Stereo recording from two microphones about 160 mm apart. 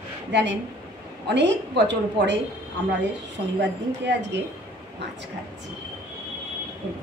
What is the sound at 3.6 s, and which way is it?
Speech, 90° right.